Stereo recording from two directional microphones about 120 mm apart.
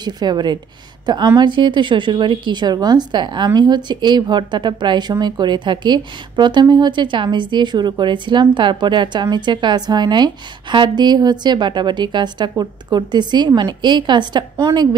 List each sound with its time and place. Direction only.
0.0 s a woman's voice: 35° right (ahead or behind)